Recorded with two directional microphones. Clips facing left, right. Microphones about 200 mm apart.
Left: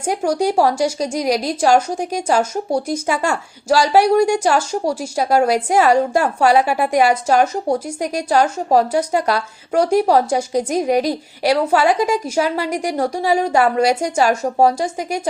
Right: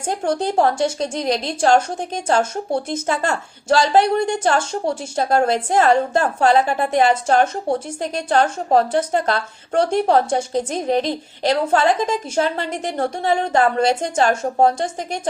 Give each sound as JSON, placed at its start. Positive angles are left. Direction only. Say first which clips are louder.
{"t": 0.0, "sound": "a woman's voice", "louder": "left 3 dB", "side_deg": 10}